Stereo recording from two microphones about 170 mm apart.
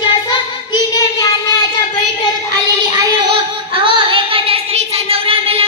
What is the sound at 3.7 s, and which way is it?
Female singing, 30° right (ahead or behind).